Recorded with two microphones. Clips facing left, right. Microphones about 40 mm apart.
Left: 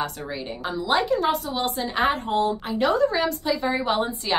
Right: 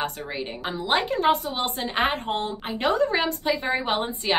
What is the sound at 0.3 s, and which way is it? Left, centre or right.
A woman's voice, right.